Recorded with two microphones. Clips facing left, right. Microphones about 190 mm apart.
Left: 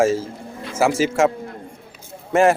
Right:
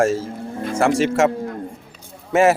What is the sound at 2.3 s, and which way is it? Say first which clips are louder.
Speech: even; centre (ahead or behind).